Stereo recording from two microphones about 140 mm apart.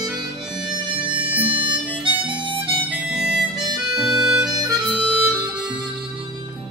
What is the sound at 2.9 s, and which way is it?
Harmonica, 10° right (ahead or behind).